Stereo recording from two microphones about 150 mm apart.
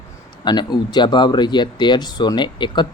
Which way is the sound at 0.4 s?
30° left (ahead or behind).